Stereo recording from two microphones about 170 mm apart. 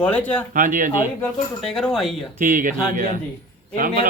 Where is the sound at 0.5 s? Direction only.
50° right (ahead or behind).